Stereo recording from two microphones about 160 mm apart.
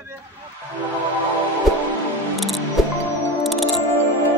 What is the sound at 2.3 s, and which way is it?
Speech, centre (ahead or behind).